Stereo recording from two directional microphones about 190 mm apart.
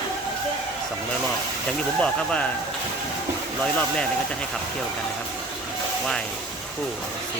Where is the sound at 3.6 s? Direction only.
5° left (ahead or behind).